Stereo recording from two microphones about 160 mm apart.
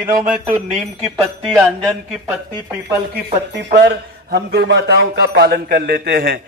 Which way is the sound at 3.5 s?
80° right.